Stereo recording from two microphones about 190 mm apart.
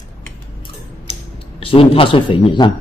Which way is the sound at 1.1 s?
30° left (ahead or behind).